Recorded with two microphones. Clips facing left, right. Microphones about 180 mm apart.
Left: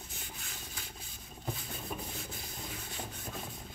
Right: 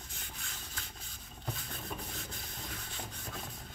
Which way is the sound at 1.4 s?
5° left (ahead or behind).